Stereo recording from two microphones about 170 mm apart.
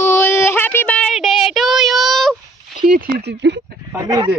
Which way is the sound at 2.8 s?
55° right (ahead or behind).